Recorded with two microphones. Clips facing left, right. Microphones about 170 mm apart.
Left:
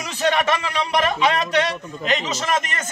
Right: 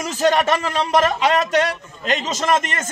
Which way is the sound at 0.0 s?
40° right (ahead or behind).